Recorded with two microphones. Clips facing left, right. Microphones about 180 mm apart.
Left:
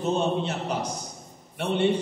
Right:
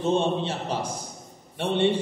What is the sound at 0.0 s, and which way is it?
A man's voice, 30° right (ahead or behind).